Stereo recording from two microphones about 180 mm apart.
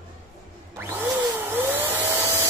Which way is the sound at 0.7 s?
15° right (ahead or behind).